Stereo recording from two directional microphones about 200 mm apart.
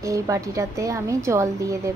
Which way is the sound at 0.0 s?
15° right (ahead or behind).